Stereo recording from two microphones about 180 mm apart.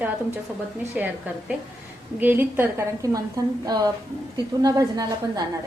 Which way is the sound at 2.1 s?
10° right (ahead or behind).